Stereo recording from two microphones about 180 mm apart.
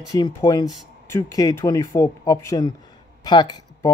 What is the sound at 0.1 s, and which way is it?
Speech, 20° left (ahead or behind).